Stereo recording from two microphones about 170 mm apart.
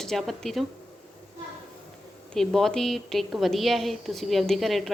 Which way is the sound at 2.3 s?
Centre (ahead or behind).